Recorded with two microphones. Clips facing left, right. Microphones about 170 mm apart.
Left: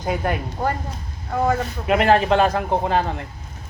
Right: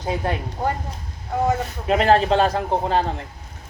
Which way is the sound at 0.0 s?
25° right (ahead or behind).